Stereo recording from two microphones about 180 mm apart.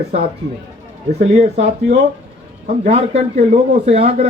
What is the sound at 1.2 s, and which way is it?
A man's voice, 40° right (ahead or behind).